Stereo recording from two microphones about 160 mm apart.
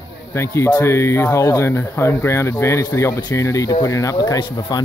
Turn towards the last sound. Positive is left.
turn(degrees=25)  # may be behind; listen again after turning